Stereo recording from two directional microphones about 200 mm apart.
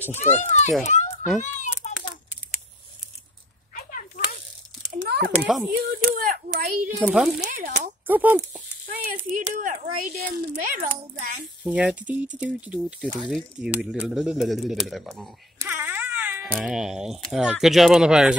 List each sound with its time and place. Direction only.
0.2 s a child's voice: 35° left (ahead or behind)
0.8 s children playing: 35° left (ahead or behind)
1.4 s a sound: 35° left (ahead or behind)
4.9 s a sound: 60° right (ahead or behind)
5.4 s speech: centre (ahead or behind)
6.0 s speech: 45° right (ahead or behind)
7.0 s speech: 5° right (ahead or behind)
7.4 s speech: 40° right (ahead or behind)
8.1 s speech: 10° right (ahead or behind)
9.3 s speech: 40° right (ahead or behind)
11.6 s speech: 5° right (ahead or behind)
15.6 s speech: 10° right (ahead or behind)